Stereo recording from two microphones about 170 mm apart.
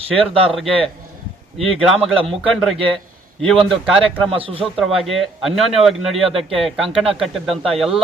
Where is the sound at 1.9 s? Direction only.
Centre (ahead or behind).